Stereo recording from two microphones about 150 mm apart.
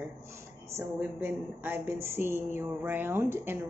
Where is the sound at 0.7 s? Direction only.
15° right (ahead or behind).